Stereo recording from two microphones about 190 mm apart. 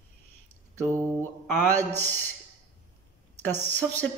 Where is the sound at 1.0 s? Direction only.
10° left (ahead or behind).